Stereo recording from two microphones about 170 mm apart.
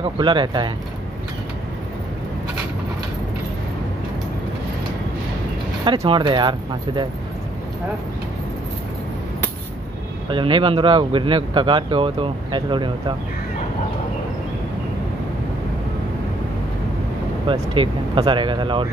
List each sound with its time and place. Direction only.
0.0 s speech: 30° right (ahead or behind)
5.9 s speech: 30° right (ahead or behind)
10.2 s speech: 30° right (ahead or behind)
17.5 s speech: 30° right (ahead or behind)